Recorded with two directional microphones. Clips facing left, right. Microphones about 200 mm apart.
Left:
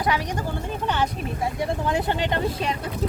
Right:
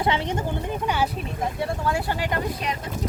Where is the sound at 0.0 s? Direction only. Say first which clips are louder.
Right 1 dB; 25° right (ahead or behind).